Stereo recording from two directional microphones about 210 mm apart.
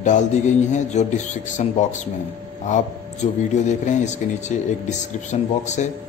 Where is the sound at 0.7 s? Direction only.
35° left (ahead or behind).